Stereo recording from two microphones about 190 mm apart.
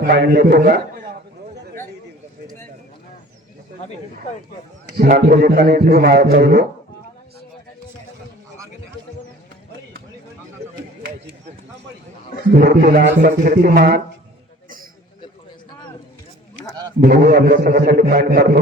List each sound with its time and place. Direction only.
0.1 s a man's voice: 55° right (ahead or behind)
4.9 s a man's voice: 45° right (ahead or behind)
12.5 s a man's voice: 50° right (ahead or behind)
17.0 s a man's voice: 50° right (ahead or behind)